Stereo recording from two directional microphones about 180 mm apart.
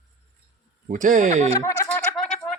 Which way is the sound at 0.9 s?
45° right (ahead or behind).